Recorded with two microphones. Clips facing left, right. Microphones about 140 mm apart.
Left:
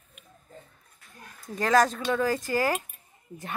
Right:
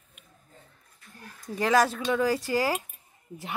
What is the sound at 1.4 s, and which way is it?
A child's voice, 15° right (ahead or behind).